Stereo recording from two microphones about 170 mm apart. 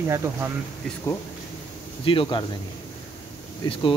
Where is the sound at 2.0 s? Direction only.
30° left (ahead or behind).